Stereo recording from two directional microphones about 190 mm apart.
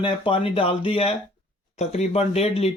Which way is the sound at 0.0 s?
30° left (ahead or behind).